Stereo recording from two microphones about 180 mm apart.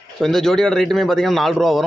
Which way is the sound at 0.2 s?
Centre (ahead or behind).